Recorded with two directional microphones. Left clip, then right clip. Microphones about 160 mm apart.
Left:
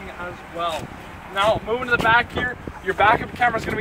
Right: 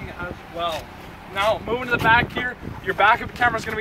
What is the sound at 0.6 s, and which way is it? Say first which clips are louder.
Speech: left 1 dB; centre (ahead or behind).